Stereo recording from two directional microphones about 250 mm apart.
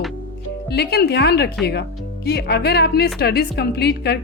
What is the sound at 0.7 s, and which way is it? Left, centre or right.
A woman's voice, left.